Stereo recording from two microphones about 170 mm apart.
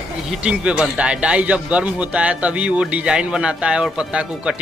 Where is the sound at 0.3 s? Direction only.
5° right (ahead or behind).